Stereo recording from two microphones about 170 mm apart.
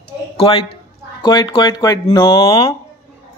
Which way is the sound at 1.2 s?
25° left (ahead or behind).